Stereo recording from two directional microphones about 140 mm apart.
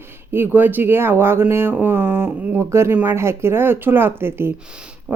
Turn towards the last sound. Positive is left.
turn(degrees=-15)  # may be behind; listen again after turning